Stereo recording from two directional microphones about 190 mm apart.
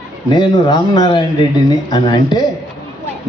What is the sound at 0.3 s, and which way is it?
A man's voice, 25° left (ahead or behind).